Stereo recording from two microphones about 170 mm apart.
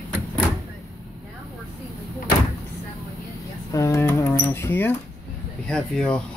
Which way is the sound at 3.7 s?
15° left (ahead or behind).